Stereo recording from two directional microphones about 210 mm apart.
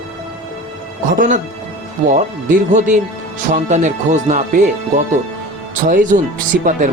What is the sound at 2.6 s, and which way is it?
Speech, 35° right (ahead or behind).